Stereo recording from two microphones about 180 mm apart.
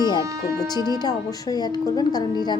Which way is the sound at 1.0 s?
20° left (ahead or behind).